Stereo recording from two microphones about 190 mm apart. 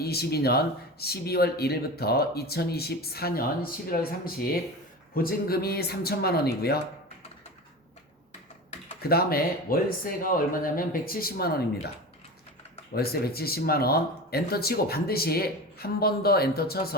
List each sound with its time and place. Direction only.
0.0 s speech: 55° left (ahead or behind)
5.1 s speech: 50° left (ahead or behind)
9.0 s speech: 55° left (ahead or behind)
12.9 s speech: 55° left (ahead or behind)